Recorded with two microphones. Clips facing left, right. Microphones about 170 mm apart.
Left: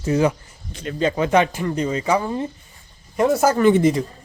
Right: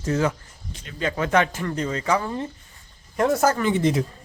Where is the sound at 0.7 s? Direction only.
60° left (ahead or behind).